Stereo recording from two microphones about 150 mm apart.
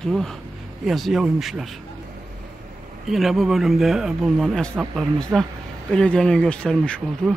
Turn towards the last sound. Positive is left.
turn(degrees=5)  # may be behind; listen again after turning